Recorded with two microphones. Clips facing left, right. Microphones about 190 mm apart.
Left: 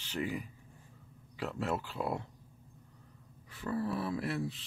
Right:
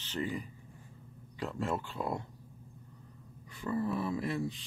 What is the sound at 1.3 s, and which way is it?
Mantra, 5° left (ahead or behind).